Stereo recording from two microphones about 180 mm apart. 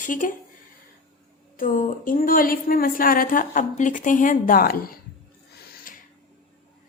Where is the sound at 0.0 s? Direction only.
45° left (ahead or behind).